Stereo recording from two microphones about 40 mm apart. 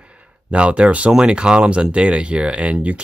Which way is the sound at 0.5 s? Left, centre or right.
Right.